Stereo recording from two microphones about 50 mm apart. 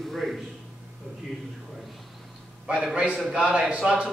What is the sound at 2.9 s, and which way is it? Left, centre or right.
A man's voice, centre.